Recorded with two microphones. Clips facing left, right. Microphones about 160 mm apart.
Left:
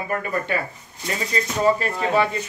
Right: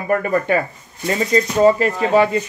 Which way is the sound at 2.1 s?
40° right (ahead or behind).